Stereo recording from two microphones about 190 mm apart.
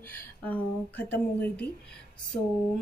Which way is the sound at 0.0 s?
10° left (ahead or behind).